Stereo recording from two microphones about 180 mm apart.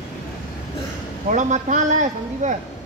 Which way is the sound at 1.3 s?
40° right (ahead or behind).